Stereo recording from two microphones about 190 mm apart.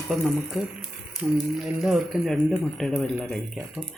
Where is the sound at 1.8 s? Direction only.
Centre (ahead or behind).